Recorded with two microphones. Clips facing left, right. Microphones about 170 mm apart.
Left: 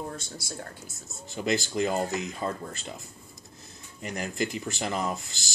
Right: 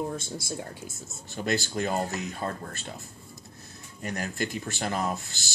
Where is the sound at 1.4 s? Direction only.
15° left (ahead or behind).